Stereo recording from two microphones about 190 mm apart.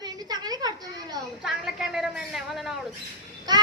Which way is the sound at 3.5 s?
20° right (ahead or behind).